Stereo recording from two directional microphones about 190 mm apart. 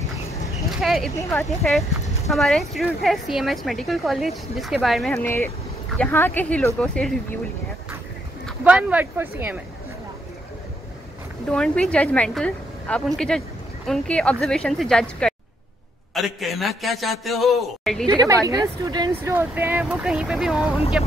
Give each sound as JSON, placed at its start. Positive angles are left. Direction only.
{"t": 0.7, "sound": "a sound", "side_deg": 0}
{"t": 1.6, "sound": "a woman's voice", "side_deg": 0}
{"t": 5.1, "sound": "speech", "side_deg": 10}
{"t": 8.5, "sound": "a woman's voice", "side_deg": -5}
{"t": 11.4, "sound": "a woman's voice", "side_deg": 5}
{"t": 16.3, "sound": "a woman's voice", "side_deg": 0}
{"t": 18.0, "sound": "a woman's voice", "side_deg": -20}
{"t": 19.3, "sound": "a woman's voice", "side_deg": -10}